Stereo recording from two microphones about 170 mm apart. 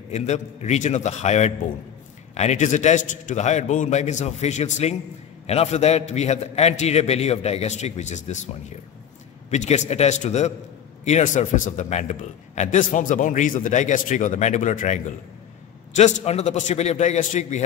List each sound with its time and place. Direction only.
0.1 s a man's voice: 40° left (ahead or behind)